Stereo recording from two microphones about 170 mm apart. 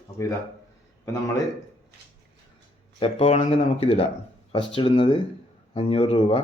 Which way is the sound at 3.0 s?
35° left (ahead or behind).